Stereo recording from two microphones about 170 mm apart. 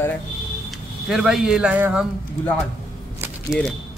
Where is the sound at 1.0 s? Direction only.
5° right (ahead or behind).